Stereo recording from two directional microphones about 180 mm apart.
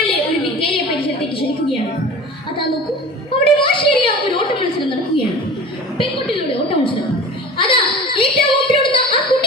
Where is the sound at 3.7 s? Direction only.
30° left (ahead or behind).